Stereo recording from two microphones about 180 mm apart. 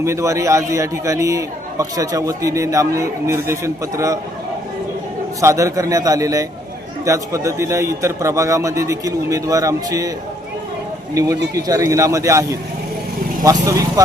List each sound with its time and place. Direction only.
0.0 s a man's voice: 15° right (ahead or behind)
5.4 s a man's voice: 15° right (ahead or behind)
11.1 s a man's voice: 20° right (ahead or behind)